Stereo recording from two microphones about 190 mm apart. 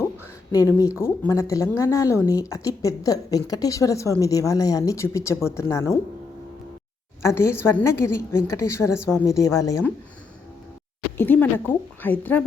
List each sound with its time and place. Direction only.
0.5 s a woman's voice: 15° left (ahead or behind)
7.2 s a woman's voice: 15° left (ahead or behind)
11.2 s a woman's voice: 10° left (ahead or behind)